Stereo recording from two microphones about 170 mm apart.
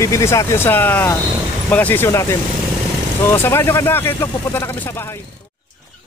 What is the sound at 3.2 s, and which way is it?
Speech, 15° left (ahead or behind).